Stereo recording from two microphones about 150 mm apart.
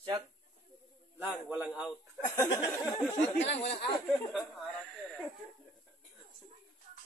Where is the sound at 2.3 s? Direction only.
20° left (ahead or behind).